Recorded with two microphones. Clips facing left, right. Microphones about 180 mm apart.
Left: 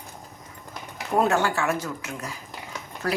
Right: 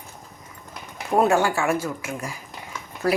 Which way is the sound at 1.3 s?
10° right (ahead or behind).